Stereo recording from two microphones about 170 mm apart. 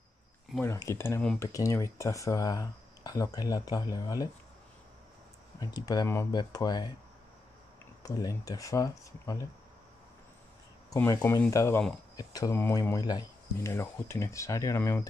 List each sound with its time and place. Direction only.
0.6 s speech: 15° left (ahead or behind)
5.6 s speech: 20° left (ahead or behind)
8.0 s speech: 20° left (ahead or behind)
11.0 s speech: 10° left (ahead or behind)